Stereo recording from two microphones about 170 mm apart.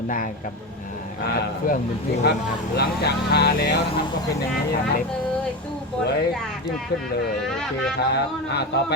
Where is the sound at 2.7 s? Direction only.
70° left (ahead or behind).